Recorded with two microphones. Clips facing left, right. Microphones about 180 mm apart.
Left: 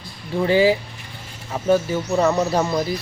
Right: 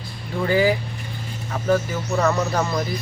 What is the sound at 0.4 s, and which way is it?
Speech, 25° left (ahead or behind).